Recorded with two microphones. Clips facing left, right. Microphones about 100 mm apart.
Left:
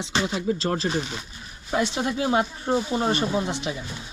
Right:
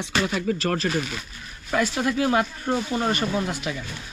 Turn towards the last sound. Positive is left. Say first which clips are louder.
# even
turn(degrees=25)  # may be behind; listen again after turning